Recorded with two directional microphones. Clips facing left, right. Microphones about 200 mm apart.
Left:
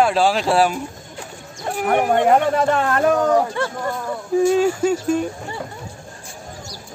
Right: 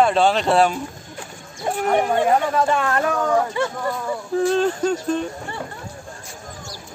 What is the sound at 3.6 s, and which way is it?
Speech, centre (ahead or behind).